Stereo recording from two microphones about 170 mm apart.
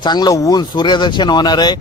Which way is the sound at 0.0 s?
25° left (ahead or behind).